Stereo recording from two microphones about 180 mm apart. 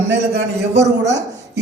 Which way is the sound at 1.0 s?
75° right (ahead or behind).